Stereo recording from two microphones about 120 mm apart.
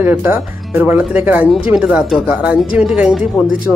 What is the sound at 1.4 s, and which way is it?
Speech, 5° right (ahead or behind).